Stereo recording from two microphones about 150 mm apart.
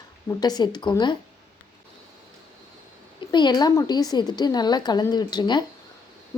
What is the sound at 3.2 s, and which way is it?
A woman's voice, 30° left (ahead or behind).